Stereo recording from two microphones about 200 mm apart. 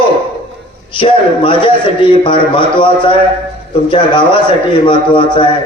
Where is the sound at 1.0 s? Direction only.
25° left (ahead or behind).